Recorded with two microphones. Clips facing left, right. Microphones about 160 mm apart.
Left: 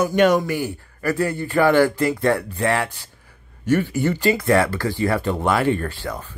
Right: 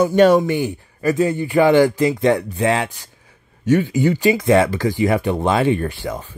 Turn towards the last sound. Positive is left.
turn(degrees=-15)  # may be behind; listen again after turning